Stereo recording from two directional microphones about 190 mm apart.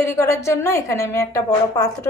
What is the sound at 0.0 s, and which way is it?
A woman's voice, 15° left (ahead or behind).